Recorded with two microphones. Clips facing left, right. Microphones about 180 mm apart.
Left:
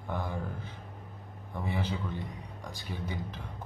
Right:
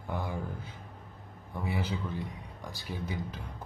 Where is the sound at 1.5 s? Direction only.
5° right (ahead or behind).